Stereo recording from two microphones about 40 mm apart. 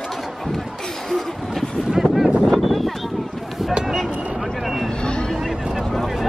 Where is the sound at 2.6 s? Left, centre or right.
Centre.